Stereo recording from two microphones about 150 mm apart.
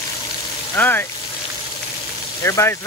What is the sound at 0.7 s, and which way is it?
Speech, 15° left (ahead or behind).